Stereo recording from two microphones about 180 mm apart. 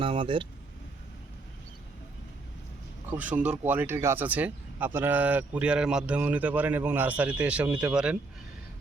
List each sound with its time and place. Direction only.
0.0 s speech: 30° right (ahead or behind)
3.2 s speech: 10° right (ahead or behind)